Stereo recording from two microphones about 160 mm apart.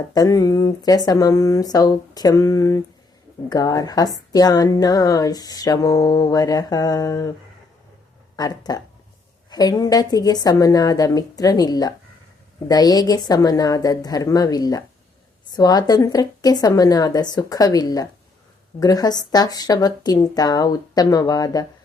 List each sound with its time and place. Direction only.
0.1 s music: 20° left (ahead or behind)
8.4 s music: 25° left (ahead or behind)